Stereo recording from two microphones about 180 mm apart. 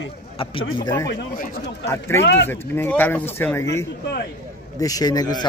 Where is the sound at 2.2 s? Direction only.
70° left (ahead or behind).